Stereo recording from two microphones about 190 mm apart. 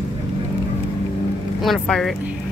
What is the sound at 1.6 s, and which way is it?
Speech, centre (ahead or behind).